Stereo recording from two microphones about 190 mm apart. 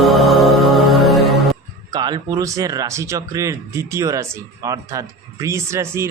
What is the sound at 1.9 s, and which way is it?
Speech, 20° right (ahead or behind).